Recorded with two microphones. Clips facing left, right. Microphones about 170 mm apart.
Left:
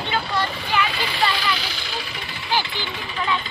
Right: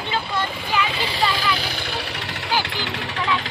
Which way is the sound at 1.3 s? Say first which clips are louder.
Right 2 dB; 50° right (ahead or behind).